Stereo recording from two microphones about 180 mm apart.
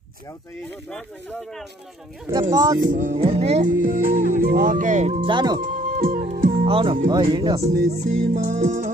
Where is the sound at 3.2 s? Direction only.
35° right (ahead or behind).